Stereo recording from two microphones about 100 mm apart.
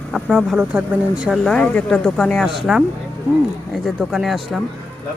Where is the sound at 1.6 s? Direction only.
10° left (ahead or behind).